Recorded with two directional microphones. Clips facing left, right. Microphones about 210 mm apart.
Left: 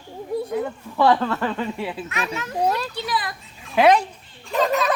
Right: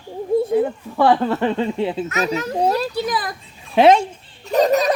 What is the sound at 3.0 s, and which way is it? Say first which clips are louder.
Children playing: right 5 dB; 45° right (ahead or behind).